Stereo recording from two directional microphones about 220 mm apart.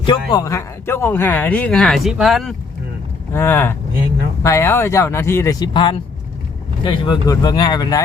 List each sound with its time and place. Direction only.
0.0 s speech: 20° left (ahead or behind)